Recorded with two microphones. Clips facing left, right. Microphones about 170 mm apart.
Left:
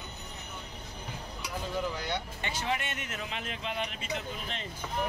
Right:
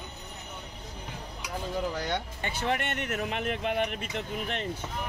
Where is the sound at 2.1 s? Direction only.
50° right (ahead or behind).